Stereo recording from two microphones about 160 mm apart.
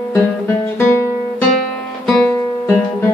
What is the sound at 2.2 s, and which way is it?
Music, 15° left (ahead or behind).